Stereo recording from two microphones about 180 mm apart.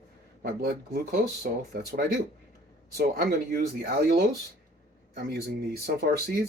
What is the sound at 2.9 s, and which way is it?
Speech, 55° right (ahead or behind).